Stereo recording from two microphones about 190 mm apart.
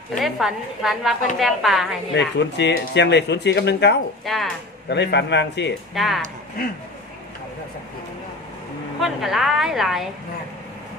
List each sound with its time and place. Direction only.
0.2 s a woman's voice: centre (ahead or behind)
2.1 s speech: 65° left (ahead or behind)
4.2 s a woman's voice: centre (ahead or behind)
4.8 s speech: 65° left (ahead or behind)
5.9 s a woman's voice: centre (ahead or behind)
9.0 s a woman's voice: centre (ahead or behind)